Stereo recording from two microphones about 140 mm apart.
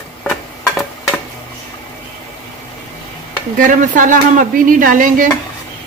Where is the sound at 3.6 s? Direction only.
70° right (ahead or behind).